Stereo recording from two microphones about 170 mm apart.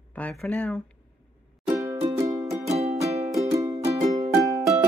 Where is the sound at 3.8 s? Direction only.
40° right (ahead or behind).